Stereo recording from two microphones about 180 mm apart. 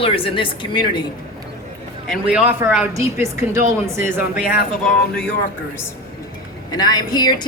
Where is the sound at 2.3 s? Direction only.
10° right (ahead or behind).